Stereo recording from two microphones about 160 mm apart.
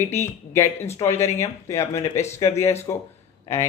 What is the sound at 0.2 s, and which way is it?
Speech, 15° left (ahead or behind).